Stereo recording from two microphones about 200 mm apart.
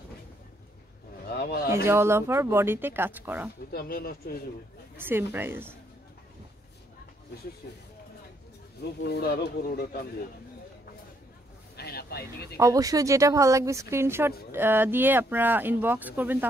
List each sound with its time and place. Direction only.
1.3 s a sound: 50° left (ahead or behind)
1.9 s speech: 10° right (ahead or behind)
3.7 s speech: 50° left (ahead or behind)
4.9 s speech: 10° right (ahead or behind)
7.6 s speech: 50° left (ahead or behind)
9.0 s speech: 55° left (ahead or behind)
11.7 s a sound: 50° left (ahead or behind)
12.5 s speech: 15° right (ahead or behind)